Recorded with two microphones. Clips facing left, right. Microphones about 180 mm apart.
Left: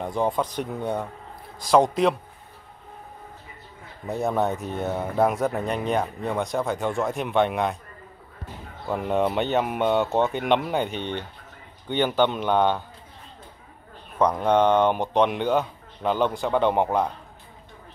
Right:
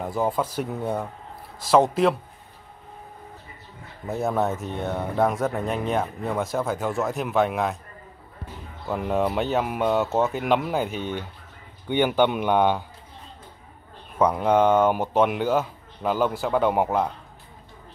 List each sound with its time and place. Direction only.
0.0 s speech: 5° right (ahead or behind)
4.1 s speech: centre (ahead or behind)
8.8 s speech: centre (ahead or behind)
14.1 s speech: 10° right (ahead or behind)